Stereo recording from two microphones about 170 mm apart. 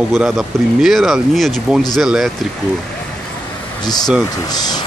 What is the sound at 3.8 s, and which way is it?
Speech, 25° left (ahead or behind).